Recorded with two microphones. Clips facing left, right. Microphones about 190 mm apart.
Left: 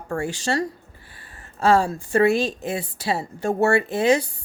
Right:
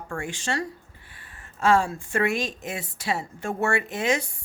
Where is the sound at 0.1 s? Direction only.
40° left (ahead or behind).